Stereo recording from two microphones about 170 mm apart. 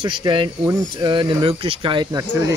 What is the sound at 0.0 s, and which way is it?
Speech, 30° right (ahead or behind).